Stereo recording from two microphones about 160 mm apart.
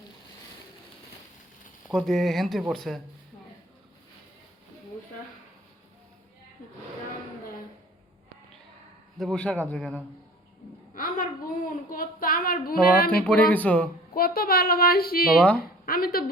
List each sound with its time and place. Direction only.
1.9 s speech: centre (ahead or behind)
9.1 s speech: centre (ahead or behind)
10.9 s a sound: 60° left (ahead or behind)
13.1 s speech: 10° left (ahead or behind)
14.2 s a woman's voice: 70° left (ahead or behind)